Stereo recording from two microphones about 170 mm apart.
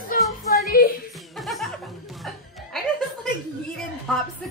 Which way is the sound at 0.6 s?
60° left (ahead or behind).